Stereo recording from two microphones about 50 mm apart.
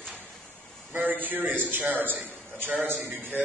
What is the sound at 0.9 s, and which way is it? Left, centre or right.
A man's voice, right.